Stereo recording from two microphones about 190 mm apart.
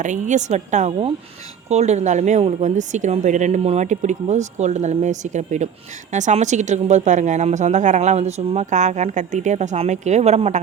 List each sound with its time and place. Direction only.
0.0 s a woman's voice: 40° right (ahead or behind)